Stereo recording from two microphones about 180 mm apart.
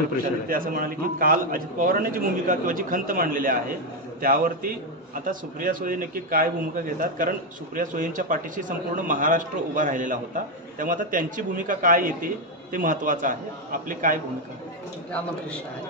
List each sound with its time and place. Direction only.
0.5 s speech: 50° right (ahead or behind)